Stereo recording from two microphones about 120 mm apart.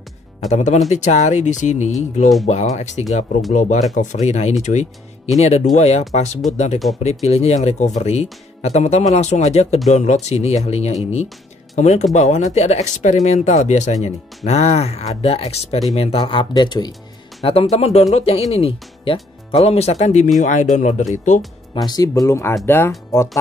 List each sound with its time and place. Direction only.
0.5 s speech: 80° left
3.5 s speech: 90° left; by 9.8 s 65° left (ahead or behind)
9.8 s speech: 80° left; by 11.2 s 65° left (ahead or behind)
11.7 s speech: 75° left (ahead or behind); by 16.9 s 35° left (ahead or behind)
17.5 s speech: 55° left (ahead or behind)
20.3 s speech: 90° left
21.7 s speech: 30° left (ahead or behind)